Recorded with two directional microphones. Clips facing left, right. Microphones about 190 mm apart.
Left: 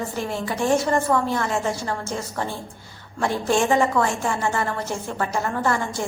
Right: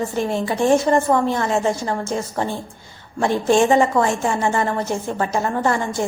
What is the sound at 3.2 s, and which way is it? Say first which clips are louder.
A woman's voice: right 5 dB; 20° right (ahead or behind).